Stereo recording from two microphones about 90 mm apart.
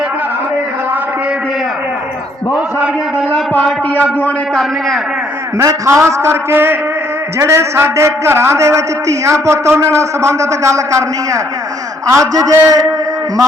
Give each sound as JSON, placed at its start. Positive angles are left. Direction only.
{"t": 5.6, "sound": "a man's voice", "side_deg": -35}